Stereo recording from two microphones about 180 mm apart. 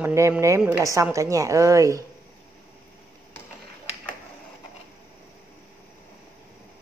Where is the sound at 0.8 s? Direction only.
15° right (ahead or behind).